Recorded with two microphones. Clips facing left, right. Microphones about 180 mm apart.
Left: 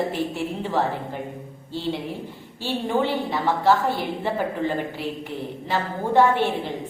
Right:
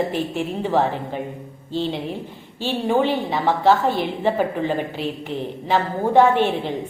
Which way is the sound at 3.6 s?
20° right (ahead or behind).